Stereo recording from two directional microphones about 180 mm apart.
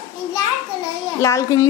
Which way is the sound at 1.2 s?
15° left (ahead or behind).